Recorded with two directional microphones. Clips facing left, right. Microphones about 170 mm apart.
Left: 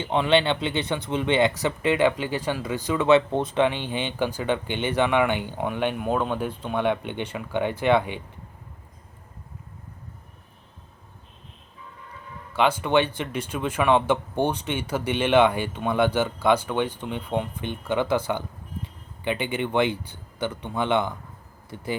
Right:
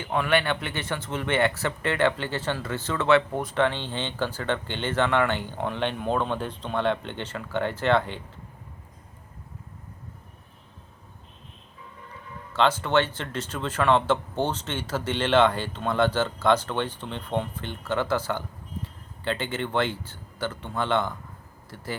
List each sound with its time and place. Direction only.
0.0 s speech: 25° left (ahead or behind)
12.5 s speech: 15° left (ahead or behind)